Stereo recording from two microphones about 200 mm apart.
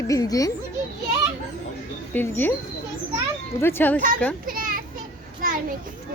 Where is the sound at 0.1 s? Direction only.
15° left (ahead or behind).